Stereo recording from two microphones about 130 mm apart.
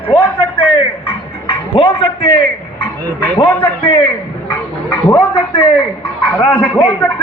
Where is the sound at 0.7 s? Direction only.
45° left (ahead or behind).